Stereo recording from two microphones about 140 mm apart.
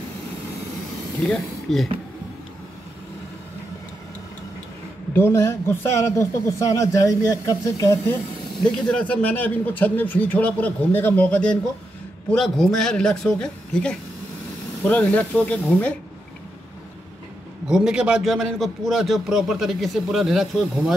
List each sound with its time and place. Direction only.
1.2 s a man's voice: centre (ahead or behind)
5.1 s a man's voice: 15° left (ahead or behind)
8.5 s a man's voice: 5° left (ahead or behind)
17.6 s a man's voice: 5° right (ahead or behind)